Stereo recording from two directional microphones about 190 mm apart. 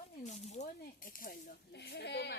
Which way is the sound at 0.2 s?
35° left (ahead or behind).